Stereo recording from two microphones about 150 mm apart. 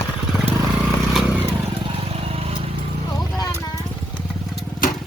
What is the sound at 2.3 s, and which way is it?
Vehicle, 40° right (ahead or behind).